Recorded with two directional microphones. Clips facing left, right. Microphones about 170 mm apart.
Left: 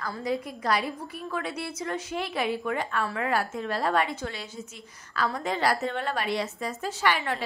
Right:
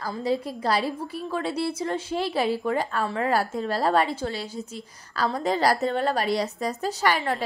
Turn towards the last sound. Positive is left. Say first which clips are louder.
# right 3 dB
turn(degrees=-40)  # may be behind; listen again after turning